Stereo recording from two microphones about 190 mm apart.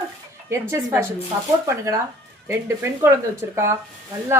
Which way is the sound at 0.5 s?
10° right (ahead or behind).